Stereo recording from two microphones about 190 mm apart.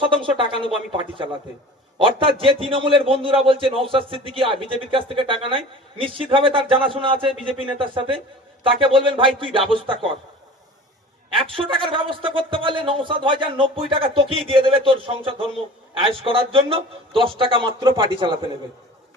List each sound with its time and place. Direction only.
0.0 s a man's voice: 25° right (ahead or behind)
11.3 s a man's voice: 25° right (ahead or behind)